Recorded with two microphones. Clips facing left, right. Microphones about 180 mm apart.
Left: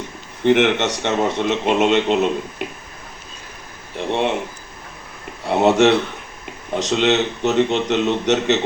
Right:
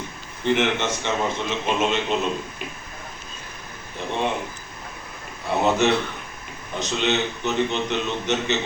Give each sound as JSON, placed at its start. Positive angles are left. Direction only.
{"t": 0.4, "sound": "a man's voice", "side_deg": 75}
{"t": 3.9, "sound": "speech", "side_deg": 75}
{"t": 5.5, "sound": "a man's voice", "side_deg": 80}